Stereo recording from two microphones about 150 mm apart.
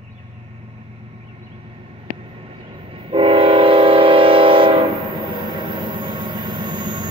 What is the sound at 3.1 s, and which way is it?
Train, 40° right (ahead or behind).